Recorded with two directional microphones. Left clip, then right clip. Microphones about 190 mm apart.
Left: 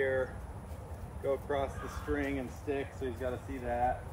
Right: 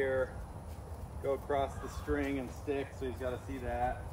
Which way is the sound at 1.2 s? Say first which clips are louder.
Even; 30° right (ahead or behind).